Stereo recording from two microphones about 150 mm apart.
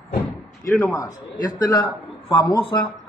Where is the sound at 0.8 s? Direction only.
20° left (ahead or behind).